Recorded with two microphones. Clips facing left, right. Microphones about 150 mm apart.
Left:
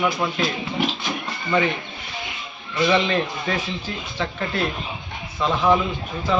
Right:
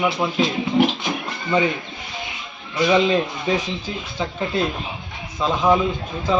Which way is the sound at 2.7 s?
15° right (ahead or behind).